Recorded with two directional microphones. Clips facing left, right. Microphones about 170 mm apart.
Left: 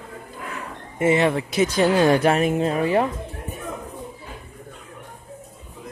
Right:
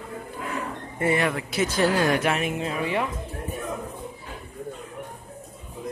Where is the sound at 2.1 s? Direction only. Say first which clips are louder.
Left 6 dB; 35° left (ahead or behind).